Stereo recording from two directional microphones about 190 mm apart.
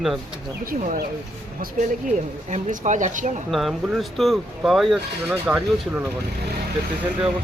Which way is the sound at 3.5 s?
Centre (ahead or behind).